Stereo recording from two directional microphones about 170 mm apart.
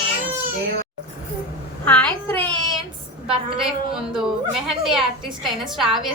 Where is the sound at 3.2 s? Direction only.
5° right (ahead or behind).